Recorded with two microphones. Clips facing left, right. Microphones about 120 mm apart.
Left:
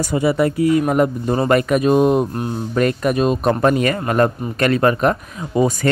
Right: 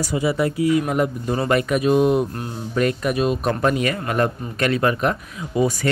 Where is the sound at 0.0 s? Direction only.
55° left (ahead or behind).